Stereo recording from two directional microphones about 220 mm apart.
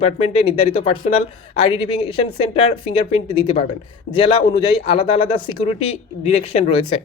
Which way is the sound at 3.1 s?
25° left (ahead or behind).